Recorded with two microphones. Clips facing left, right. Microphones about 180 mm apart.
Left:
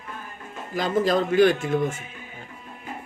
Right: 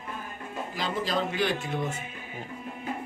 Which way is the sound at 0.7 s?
50° left (ahead or behind).